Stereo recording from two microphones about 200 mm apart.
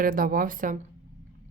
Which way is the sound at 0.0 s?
45° right (ahead or behind).